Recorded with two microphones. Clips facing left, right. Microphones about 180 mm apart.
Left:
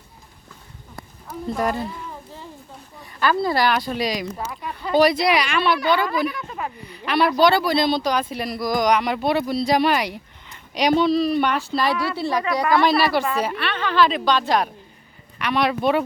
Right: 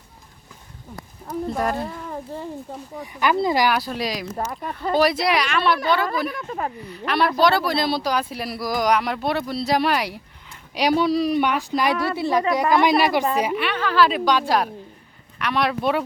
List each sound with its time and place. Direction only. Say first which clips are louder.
1.3 s speech: even; centre (ahead or behind)
3.2 s a woman's voice: even; 15° right (ahead or behind); by 4.3 s centre (ahead or behind)
4.4 s speech: right 3 dB; 45° right (ahead or behind)
4.7 s speech: left 2 dB; centre (ahead or behind)
6.3 s speech: right 2 dB; 40° right (ahead or behind)
6.8 s a woman's voice: left 2 dB; centre (ahead or behind)